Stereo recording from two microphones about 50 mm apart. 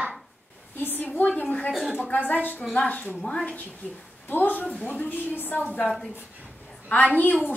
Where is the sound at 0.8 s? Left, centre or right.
Left.